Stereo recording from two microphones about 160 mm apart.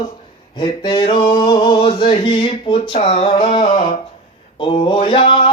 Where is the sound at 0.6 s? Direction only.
30° left (ahead or behind).